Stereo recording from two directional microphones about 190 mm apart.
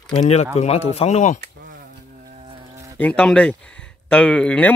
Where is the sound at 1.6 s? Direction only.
45° right (ahead or behind).